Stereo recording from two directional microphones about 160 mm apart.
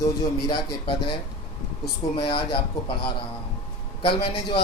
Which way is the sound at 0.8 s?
30° left (ahead or behind).